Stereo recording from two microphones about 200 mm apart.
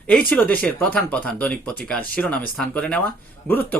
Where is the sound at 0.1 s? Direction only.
5° left (ahead or behind).